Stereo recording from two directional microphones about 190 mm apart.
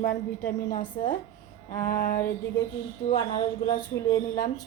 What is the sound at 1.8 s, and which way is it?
Speech, 50° left (ahead or behind).